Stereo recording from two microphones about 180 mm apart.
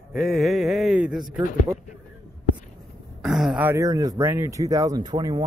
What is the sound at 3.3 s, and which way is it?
Speech, centre (ahead or behind).